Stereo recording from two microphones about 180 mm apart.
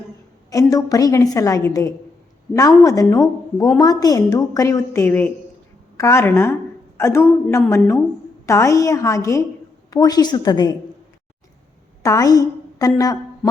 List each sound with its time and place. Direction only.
0.5 s a woman's voice: 20° left (ahead or behind)
12.0 s a woman's voice: 20° left (ahead or behind)